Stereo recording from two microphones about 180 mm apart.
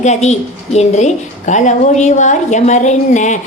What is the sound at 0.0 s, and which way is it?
A woman's voice, 40° left (ahead or behind).